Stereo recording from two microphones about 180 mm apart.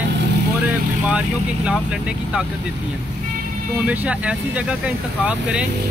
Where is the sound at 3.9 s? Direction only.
5° right (ahead or behind).